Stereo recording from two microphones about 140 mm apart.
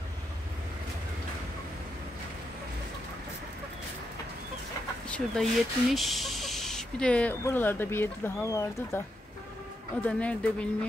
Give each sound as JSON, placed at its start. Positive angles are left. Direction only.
{"t": 5.0, "sound": "speech", "side_deg": 5}
{"t": 10.0, "sound": "speech", "side_deg": 10}